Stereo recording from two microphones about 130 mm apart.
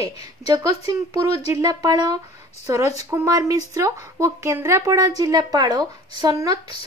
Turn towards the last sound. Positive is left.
turn(degrees=-30)  # may be behind; listen again after turning